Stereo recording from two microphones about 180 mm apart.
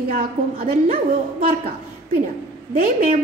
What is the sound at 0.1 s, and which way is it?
Speech, 55° right (ahead or behind).